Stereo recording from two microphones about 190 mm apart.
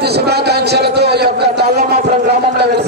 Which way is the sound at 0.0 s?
60° right (ahead or behind).